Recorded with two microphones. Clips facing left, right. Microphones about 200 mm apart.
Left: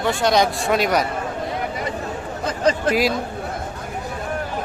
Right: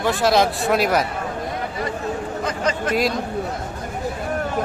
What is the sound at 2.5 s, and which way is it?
Speech, 35° left (ahead or behind).